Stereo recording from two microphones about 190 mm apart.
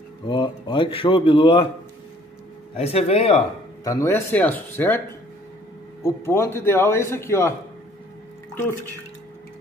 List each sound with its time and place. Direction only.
0.3 s speech: 25° left (ahead or behind)
2.8 s speech: 35° left (ahead or behind)
3.8 s a man's voice: 15° left (ahead or behind)
6.0 s a man's voice: 15° left (ahead or behind)
8.5 s a man's voice: 10° left (ahead or behind)